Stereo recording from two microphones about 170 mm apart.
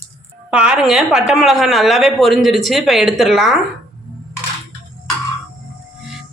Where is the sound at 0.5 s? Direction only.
5° right (ahead or behind).